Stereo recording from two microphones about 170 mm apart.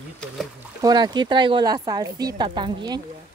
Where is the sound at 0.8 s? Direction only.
25° right (ahead or behind).